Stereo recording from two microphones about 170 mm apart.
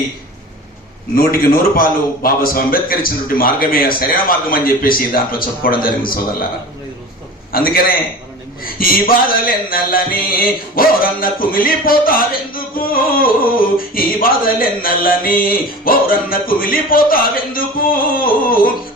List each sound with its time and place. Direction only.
1.1 s music: 60° left (ahead or behind)
7.5 s music: 60° left (ahead or behind)